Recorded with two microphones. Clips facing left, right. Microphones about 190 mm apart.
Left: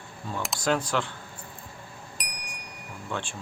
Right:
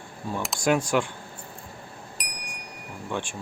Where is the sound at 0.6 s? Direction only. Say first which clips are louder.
Right 4 dB; 10° right (ahead or behind).